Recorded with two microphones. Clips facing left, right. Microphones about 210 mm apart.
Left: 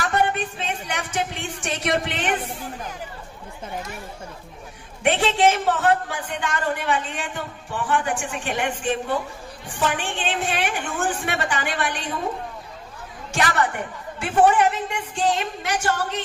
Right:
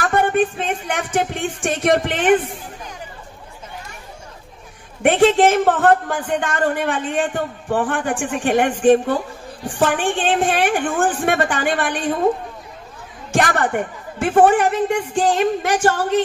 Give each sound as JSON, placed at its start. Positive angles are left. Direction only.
{"t": 0.0, "sound": "a man's voice", "side_deg": -50}
{"t": 5.0, "sound": "a man's voice", "side_deg": -50}
{"t": 13.3, "sound": "a man's voice", "side_deg": -50}